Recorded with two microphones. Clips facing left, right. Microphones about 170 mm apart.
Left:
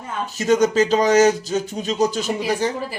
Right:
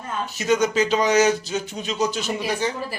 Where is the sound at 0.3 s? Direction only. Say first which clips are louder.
Left 4 dB; 40° left (ahead or behind).